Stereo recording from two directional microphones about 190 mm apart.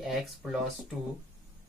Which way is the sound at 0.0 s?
Centre (ahead or behind).